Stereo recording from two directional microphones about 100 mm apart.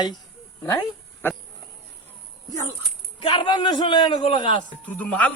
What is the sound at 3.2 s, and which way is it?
A man's voice, 55° left (ahead or behind).